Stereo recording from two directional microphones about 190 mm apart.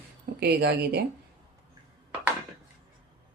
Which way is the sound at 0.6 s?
60° right (ahead or behind).